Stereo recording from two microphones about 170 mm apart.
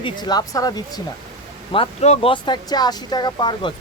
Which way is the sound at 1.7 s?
35° left (ahead or behind).